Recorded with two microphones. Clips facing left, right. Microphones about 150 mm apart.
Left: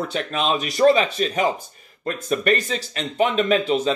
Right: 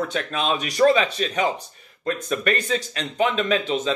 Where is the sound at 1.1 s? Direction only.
40° left (ahead or behind).